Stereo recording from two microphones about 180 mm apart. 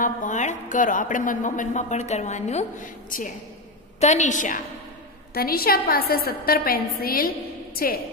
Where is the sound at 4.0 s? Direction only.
40° left (ahead or behind).